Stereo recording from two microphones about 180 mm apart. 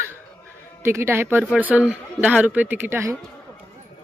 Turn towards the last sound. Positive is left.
turn(degrees=-15)  # may be behind; listen again after turning